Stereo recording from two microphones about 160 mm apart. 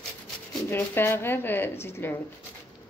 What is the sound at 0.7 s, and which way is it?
A woman's voice, 15° left (ahead or behind).